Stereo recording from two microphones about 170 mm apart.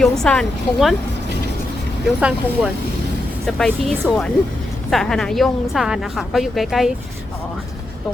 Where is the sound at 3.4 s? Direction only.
Centre (ahead or behind).